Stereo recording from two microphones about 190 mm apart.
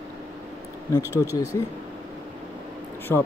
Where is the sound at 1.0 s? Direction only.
10° right (ahead or behind).